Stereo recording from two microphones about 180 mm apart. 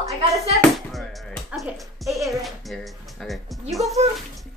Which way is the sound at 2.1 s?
20° right (ahead or behind).